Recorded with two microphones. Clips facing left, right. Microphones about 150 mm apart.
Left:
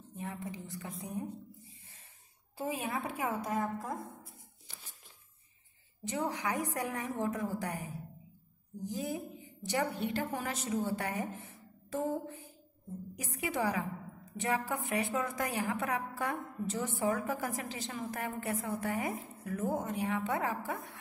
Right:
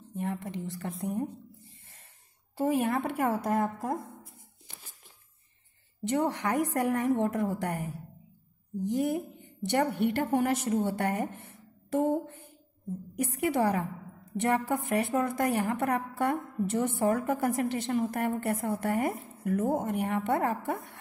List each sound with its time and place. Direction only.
0.2 s a woman's voice: 70° right (ahead or behind)
2.5 s a woman's voice: 65° right (ahead or behind)
6.0 s a woman's voice: 65° right (ahead or behind)
8.9 s a woman's voice: 60° right (ahead or behind)
13.4 s a woman's voice: 60° right (ahead or behind)